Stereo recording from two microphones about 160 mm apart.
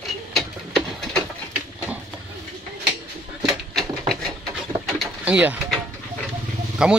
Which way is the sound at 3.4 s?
Centre (ahead or behind).